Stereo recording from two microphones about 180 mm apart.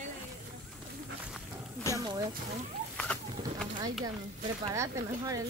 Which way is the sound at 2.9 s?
5° left (ahead or behind).